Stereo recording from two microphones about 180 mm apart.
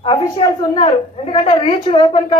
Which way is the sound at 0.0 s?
25° left (ahead or behind).